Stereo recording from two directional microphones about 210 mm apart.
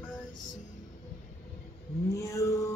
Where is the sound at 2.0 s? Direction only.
15° left (ahead or behind).